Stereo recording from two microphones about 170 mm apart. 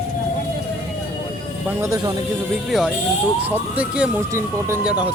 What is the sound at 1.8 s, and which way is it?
Speech, 20° right (ahead or behind).